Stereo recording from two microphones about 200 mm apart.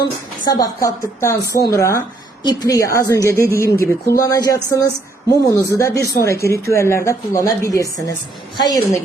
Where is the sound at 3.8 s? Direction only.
50° left (ahead or behind).